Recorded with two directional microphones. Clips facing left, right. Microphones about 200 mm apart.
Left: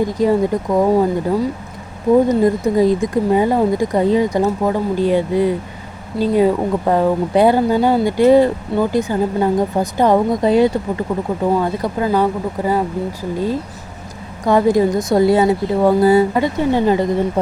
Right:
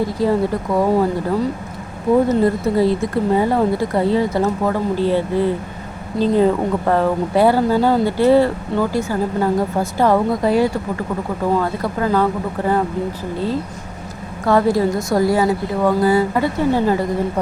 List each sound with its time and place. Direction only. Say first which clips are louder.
0.0 s speech: left 2 dB; 15° left (ahead or behind)
14.4 s a woman's voice: left 2 dB; 15° left (ahead or behind)